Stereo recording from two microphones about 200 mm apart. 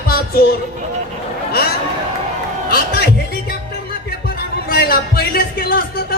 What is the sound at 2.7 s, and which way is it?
A man's voice, 50° left (ahead or behind).